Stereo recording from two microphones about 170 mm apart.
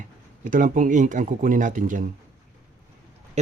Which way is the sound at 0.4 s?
50° right (ahead or behind).